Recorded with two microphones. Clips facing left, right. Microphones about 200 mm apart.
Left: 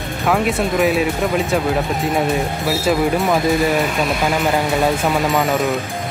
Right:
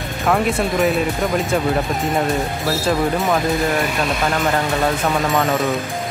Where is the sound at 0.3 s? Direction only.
Centre (ahead or behind).